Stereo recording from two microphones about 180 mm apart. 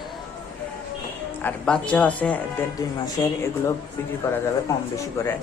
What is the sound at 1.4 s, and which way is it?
Speech, 5° left (ahead or behind).